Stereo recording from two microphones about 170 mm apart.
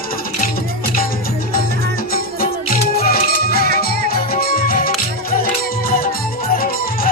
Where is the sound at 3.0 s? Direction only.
60° left (ahead or behind).